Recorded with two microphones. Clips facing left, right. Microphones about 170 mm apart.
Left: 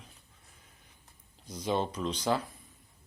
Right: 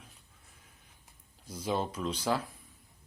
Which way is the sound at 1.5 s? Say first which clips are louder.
Left 2 dB; 5° right (ahead or behind).